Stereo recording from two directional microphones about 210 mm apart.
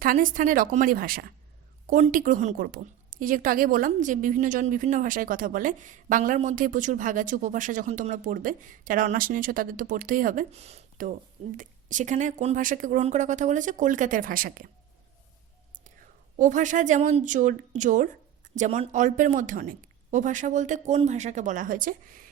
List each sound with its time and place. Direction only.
0.0 s a woman's voice: 40° right (ahead or behind)
16.4 s a woman's voice: 35° right (ahead or behind)